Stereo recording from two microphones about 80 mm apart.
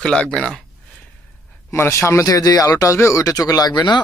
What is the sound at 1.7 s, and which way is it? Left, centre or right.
Speech, left.